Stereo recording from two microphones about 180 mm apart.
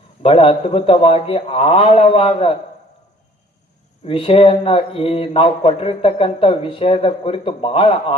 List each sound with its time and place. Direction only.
0.2 s speech: 30° left (ahead or behind)
4.0 s speech: 30° left (ahead or behind)